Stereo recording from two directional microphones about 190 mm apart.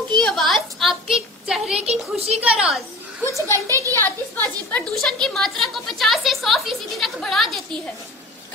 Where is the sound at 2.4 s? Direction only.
5° right (ahead or behind).